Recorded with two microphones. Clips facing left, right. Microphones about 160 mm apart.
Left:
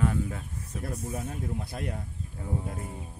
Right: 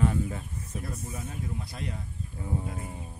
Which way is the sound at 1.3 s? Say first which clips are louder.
Left 2 dB; 55° left (ahead or behind).